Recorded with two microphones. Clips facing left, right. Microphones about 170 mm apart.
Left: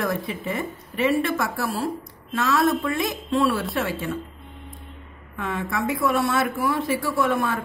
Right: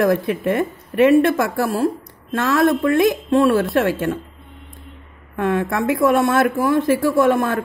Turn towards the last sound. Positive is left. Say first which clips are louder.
# right 7 dB
turn(degrees=-50)  # may be behind; listen again after turning